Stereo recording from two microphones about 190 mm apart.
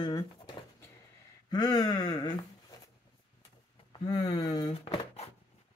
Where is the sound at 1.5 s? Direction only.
20° left (ahead or behind).